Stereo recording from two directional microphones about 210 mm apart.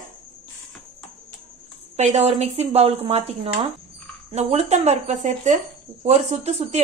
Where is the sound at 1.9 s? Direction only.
30° right (ahead or behind).